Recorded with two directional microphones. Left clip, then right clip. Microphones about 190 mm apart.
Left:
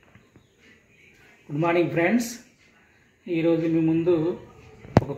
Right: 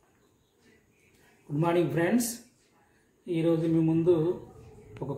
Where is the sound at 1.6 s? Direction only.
15° left (ahead or behind).